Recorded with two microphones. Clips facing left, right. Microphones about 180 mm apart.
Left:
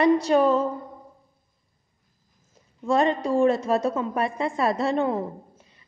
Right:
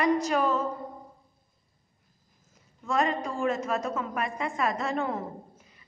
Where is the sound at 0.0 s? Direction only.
30° left (ahead or behind).